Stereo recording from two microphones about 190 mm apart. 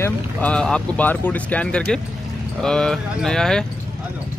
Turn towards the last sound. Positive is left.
turn(degrees=5)  # may be behind; listen again after turning